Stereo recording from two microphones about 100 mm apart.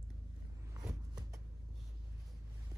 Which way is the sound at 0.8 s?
40° right (ahead or behind).